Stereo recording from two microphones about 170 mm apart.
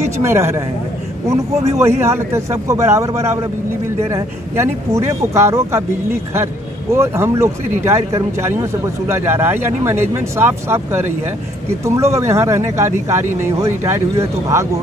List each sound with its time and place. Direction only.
0.0 s speech: 15° right (ahead or behind)
1.8 s speech: 15° right (ahead or behind)